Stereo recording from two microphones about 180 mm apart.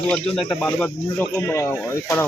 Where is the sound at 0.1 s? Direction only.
5° left (ahead or behind).